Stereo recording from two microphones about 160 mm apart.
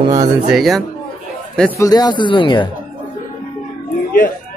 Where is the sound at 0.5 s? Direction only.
Centre (ahead or behind).